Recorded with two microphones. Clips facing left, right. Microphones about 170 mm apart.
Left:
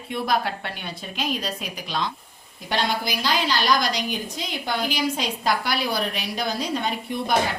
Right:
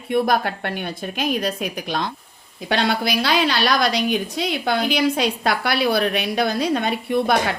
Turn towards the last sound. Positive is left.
turn(degrees=-65)  # may be behind; listen again after turning